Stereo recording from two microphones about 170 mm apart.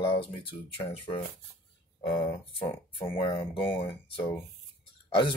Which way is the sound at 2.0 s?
30° left (ahead or behind).